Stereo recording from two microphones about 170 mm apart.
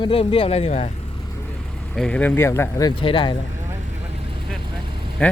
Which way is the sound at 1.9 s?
5° left (ahead or behind).